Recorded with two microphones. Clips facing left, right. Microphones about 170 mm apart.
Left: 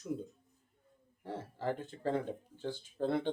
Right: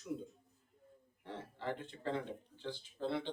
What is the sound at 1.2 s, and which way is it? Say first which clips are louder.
Speech: left 5 dB; 45° left (ahead or behind).